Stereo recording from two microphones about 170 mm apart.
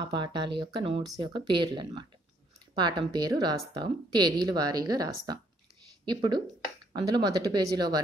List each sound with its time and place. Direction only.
0.0 s speech: 25° right (ahead or behind)